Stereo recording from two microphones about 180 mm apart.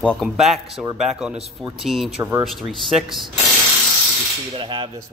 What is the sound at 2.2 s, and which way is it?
Speech, 15° right (ahead or behind).